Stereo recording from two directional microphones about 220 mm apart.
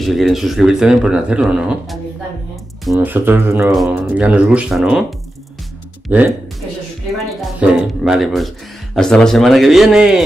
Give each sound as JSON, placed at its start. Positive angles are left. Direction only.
{"t": 0.0, "sound": "speech", "side_deg": 0}
{"t": 6.0, "sound": "speech", "side_deg": -5}
{"t": 7.3, "sound": "music", "side_deg": 0}
{"t": 8.9, "sound": "speech", "side_deg": 5}